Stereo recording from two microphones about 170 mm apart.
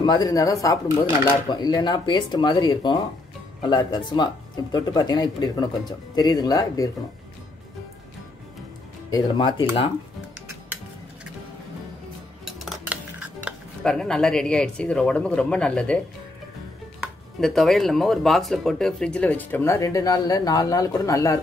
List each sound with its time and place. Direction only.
0.0 s speech: 20° left (ahead or behind)
9.1 s speech: 25° left (ahead or behind)
12.4 s dishes: centre (ahead or behind)
17.4 s speech: centre (ahead or behind); by 21.4 s 20° left (ahead or behind)